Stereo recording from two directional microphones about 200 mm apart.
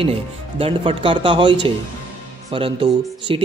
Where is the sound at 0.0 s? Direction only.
30° right (ahead or behind).